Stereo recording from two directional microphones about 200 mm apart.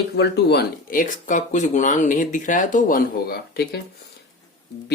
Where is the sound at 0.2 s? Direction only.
55° left (ahead or behind).